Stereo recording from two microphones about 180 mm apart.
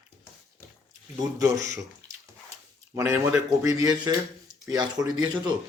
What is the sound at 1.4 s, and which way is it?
Speech, 20° right (ahead or behind).